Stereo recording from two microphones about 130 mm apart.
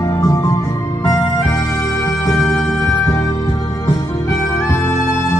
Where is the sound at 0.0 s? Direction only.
25° left (ahead or behind).